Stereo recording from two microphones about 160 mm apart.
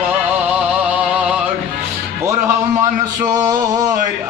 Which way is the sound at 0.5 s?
10° right (ahead or behind).